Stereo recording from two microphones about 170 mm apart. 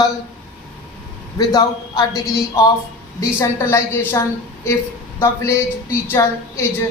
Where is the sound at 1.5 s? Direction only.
25° left (ahead or behind).